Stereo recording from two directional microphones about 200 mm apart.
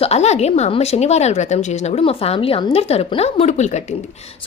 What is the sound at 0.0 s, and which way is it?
A woman's voice, 30° left (ahead or behind).